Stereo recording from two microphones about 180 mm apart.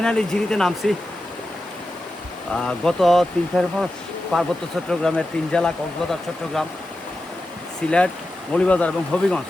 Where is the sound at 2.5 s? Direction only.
5° left (ahead or behind).